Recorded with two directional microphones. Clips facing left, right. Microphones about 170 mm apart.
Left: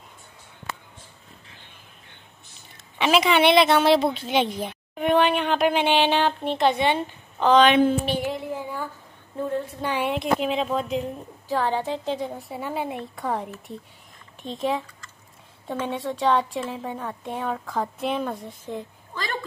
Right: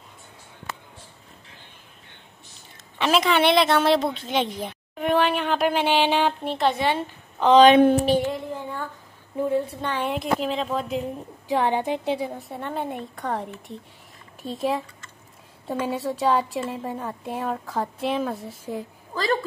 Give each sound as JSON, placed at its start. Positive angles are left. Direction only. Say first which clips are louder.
{"t": 3.0, "sound": "speech", "louder": "left 1 dB", "side_deg": 5}
{"t": 7.5, "sound": "speech", "louder": "right 4 dB", "side_deg": -40}
{"t": 8.3, "sound": "speech", "louder": "even", "side_deg": 10}
{"t": 9.3, "sound": "a woman's voice", "louder": "right 3 dB", "side_deg": -10}
{"t": 9.8, "sound": "speech", "louder": "left 1 dB", "side_deg": 5}
{"t": 11.4, "sound": "speech", "louder": "right 2 dB", "side_deg": -20}